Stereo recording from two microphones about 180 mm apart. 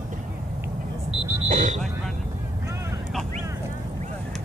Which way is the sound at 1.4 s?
40° right (ahead or behind).